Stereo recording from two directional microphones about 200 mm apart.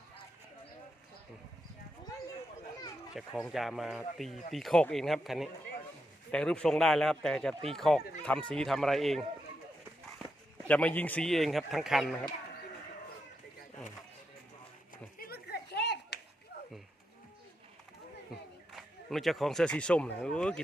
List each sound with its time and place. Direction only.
3.2 s speech: centre (ahead or behind)
10.7 s speech: 5° left (ahead or behind)
15.2 s clapping: 50° left (ahead or behind)
18.7 s speech: centre (ahead or behind)